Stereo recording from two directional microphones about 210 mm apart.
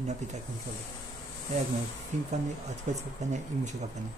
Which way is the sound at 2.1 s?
35° right (ahead or behind).